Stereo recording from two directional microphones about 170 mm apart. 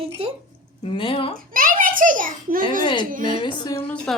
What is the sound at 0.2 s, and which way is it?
Speech, 35° right (ahead or behind).